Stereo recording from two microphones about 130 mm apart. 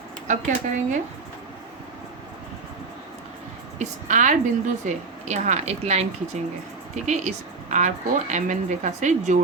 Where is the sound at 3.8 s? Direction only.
75° right (ahead or behind).